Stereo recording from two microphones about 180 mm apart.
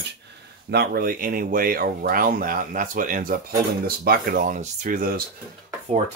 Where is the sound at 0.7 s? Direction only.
60° right (ahead or behind).